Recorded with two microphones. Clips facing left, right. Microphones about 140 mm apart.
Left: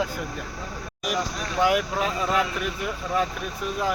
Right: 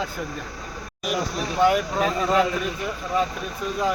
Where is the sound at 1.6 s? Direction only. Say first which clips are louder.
Right 2 dB; 5° left (ahead or behind).